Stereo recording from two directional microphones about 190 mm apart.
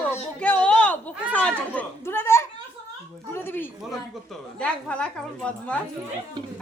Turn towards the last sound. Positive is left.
turn(degrees=5)  # may be behind; listen again after turning